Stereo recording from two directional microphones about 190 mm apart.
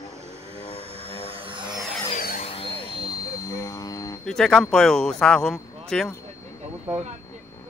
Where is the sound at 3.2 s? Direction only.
15° left (ahead or behind).